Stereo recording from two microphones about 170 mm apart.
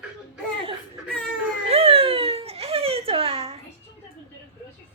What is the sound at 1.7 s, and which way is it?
Baby cry, 35° right (ahead or behind).